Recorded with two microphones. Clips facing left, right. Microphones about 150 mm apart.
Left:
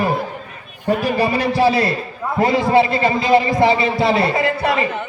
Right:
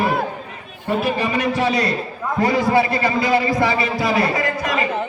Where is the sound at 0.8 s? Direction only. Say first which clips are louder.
Left 3 dB; 35° left (ahead or behind).